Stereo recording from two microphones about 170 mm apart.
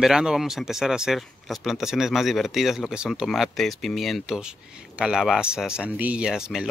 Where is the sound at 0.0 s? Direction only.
5° right (ahead or behind).